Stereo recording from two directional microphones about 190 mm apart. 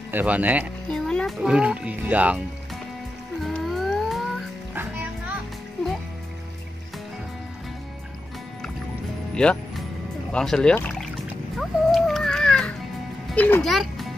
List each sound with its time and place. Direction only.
0.1 s speech: 10° right (ahead or behind)
0.8 s speech: 5° left (ahead or behind)
3.4 s music: centre (ahead or behind)
9.3 s music: 5° left (ahead or behind)
10.3 s speech: 5° left (ahead or behind)
11.5 s a sound: centre (ahead or behind)
13.3 s a child's voice: 5° left (ahead or behind)